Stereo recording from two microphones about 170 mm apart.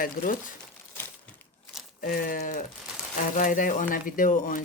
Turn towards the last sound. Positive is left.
turn(degrees=50)  # may be behind; listen again after turning